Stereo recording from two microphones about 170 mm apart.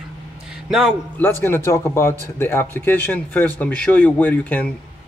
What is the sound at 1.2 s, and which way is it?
A man's voice, 10° left (ahead or behind).